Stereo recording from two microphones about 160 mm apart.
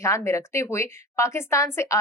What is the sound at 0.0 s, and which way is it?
Speech, 20° left (ahead or behind).